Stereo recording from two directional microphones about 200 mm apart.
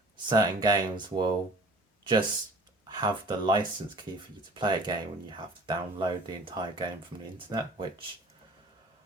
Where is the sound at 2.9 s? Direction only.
20° right (ahead or behind).